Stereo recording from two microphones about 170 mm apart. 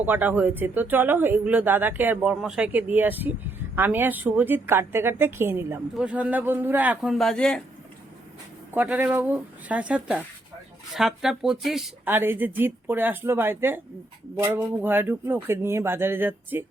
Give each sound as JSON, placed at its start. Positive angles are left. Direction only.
{"t": 0.0, "sound": "speech", "side_deg": -10}
{"t": 8.7, "sound": "speech", "side_deg": -10}
{"t": 12.0, "sound": "speech", "side_deg": -15}